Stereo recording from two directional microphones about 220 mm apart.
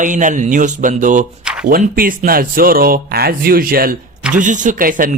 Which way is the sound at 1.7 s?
40° right (ahead or behind).